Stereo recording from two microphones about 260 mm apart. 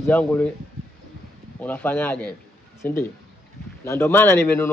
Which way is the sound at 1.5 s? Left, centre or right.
Centre.